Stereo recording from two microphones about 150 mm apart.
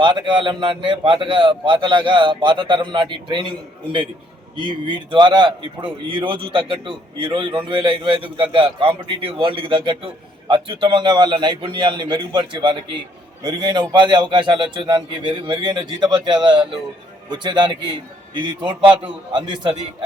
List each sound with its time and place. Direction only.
0.0 s a man's voice: 30° right (ahead or behind)
4.5 s a man's voice: 30° right (ahead or behind)